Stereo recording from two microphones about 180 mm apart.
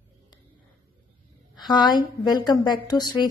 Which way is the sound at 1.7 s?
25° left (ahead or behind).